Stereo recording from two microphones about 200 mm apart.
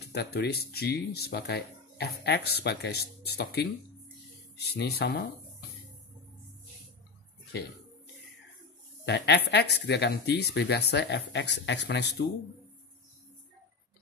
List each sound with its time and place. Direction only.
0.1 s speech: 55° left (ahead or behind)
9.0 s speech: 60° left (ahead or behind)